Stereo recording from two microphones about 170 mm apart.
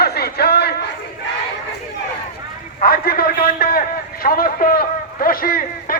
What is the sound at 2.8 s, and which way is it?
A man's voice, 60° left (ahead or behind).